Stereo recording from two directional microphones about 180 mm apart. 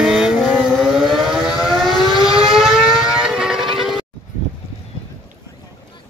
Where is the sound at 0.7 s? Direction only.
Centre (ahead or behind).